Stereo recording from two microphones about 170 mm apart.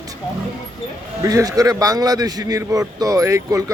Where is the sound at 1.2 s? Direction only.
20° right (ahead or behind).